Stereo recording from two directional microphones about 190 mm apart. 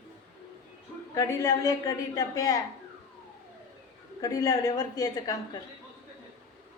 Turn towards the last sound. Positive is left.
turn(degrees=20)  # may be behind; listen again after turning